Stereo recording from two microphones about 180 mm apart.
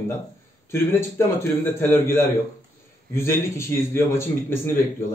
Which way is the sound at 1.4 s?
15° left (ahead or behind).